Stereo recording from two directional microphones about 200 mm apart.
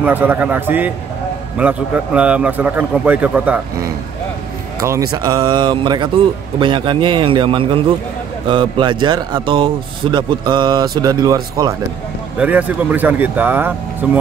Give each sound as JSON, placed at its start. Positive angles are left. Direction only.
{"t": 0.0, "sound": "a man's voice", "side_deg": -10}
{"t": 12.4, "sound": "a man's voice", "side_deg": -5}